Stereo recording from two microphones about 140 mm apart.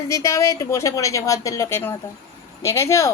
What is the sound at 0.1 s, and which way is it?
A woman's voice, 20° left (ahead or behind).